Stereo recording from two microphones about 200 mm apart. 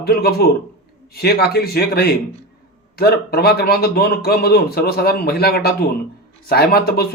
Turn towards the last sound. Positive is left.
turn(degrees=50)  # may be behind; listen again after turning